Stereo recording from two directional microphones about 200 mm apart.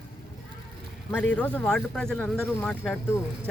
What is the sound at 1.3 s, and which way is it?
Speech, 5° left (ahead or behind).